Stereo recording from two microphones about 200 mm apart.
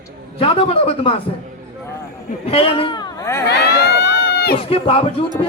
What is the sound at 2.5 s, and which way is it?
Speech, 30° left (ahead or behind).